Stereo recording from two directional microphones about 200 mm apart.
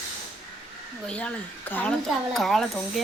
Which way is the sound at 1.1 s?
5° left (ahead or behind).